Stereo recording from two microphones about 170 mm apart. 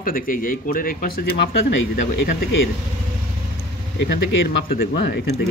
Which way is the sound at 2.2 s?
65° left (ahead or behind).